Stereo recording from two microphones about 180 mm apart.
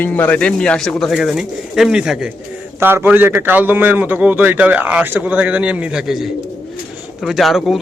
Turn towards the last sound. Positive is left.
turn(degrees=0)  # may be behind; listen again after turning